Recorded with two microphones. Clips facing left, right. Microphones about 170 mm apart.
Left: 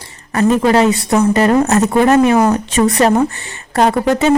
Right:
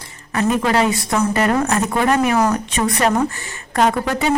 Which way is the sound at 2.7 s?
40° left (ahead or behind).